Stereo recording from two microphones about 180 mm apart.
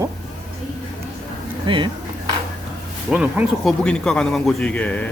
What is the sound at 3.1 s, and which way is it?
Speech, 10° right (ahead or behind).